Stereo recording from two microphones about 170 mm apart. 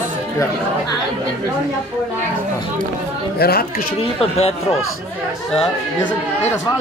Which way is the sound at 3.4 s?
65° left (ahead or behind).